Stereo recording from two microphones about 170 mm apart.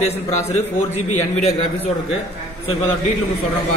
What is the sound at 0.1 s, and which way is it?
A man's voice, 40° left (ahead or behind).